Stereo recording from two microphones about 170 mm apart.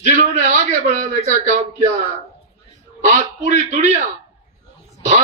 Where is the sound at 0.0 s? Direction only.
45° right (ahead or behind).